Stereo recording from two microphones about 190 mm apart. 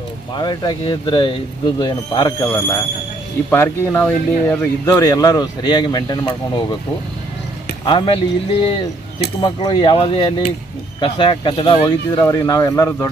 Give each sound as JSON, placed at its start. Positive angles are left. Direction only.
{"t": 0.3, "sound": "speech", "side_deg": 20}
{"t": 2.4, "sound": "speech", "side_deg": 15}
{"t": 7.8, "sound": "speech", "side_deg": 25}